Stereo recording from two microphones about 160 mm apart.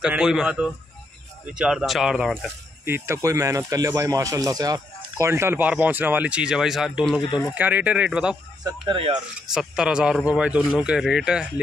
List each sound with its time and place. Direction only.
0.0 s a man's voice: 5° right (ahead or behind)
2.8 s speech: 15° right (ahead or behind)
8.8 s speech: 30° right (ahead or behind)
9.5 s a man's voice: 5° right (ahead or behind)